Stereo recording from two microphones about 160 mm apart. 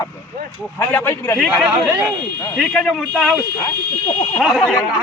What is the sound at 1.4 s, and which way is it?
Speech, centre (ahead or behind).